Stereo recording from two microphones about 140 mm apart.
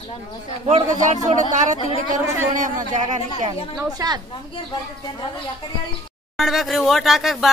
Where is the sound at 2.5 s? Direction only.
65° right (ahead or behind).